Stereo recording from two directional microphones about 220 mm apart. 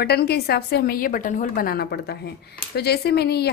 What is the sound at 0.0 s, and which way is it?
Speech, 45° left (ahead or behind).